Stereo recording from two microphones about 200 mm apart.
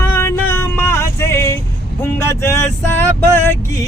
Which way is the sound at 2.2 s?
15° left (ahead or behind).